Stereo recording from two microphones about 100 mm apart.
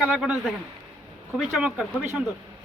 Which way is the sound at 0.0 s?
10° right (ahead or behind).